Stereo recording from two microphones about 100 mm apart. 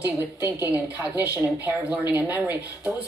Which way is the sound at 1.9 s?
15° right (ahead or behind).